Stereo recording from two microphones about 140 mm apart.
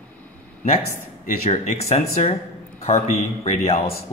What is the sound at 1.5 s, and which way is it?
Speech, 55° left (ahead or behind).